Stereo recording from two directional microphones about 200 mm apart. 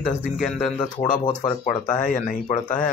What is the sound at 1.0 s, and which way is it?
Speech, 35° left (ahead or behind).